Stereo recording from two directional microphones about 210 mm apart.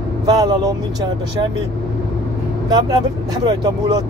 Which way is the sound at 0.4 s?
20° right (ahead or behind).